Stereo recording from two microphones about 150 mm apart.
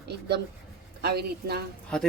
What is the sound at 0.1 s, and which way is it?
Speech, 90° right.